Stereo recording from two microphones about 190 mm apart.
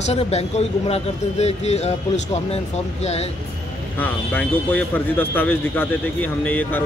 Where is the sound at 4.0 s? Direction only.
10° left (ahead or behind).